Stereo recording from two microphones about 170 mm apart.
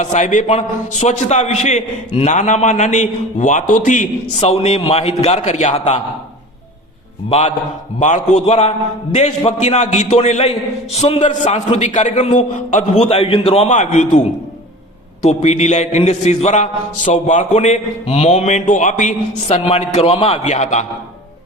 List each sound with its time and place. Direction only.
0.0 s a man's voice: 45° left (ahead or behind)
7.3 s a man's voice: 35° left (ahead or behind)
15.2 s a man's voice: 40° left (ahead or behind)